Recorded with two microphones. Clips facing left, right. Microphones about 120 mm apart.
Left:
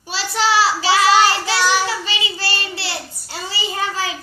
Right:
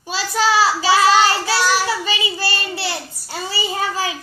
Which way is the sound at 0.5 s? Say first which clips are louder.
Even; 30° right (ahead or behind).